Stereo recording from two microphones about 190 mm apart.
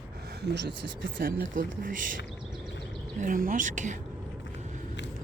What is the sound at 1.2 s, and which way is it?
Speech, 45° right (ahead or behind).